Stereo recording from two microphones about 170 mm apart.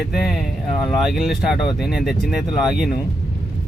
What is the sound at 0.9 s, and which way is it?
Speech, centre (ahead or behind).